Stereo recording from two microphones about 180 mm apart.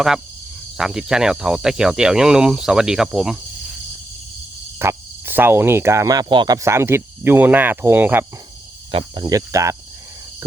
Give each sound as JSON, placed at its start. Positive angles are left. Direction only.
{"t": 0.8, "sound": "speech", "side_deg": -5}
{"t": 4.8, "sound": "cricket", "side_deg": -15}
{"t": 8.9, "sound": "cricket", "side_deg": -25}